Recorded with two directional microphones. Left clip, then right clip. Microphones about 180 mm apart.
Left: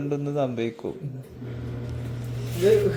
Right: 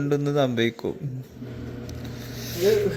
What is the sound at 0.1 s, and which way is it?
Speech, 20° right (ahead or behind).